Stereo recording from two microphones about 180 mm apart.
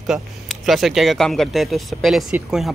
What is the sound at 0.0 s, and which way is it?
Speech, centre (ahead or behind).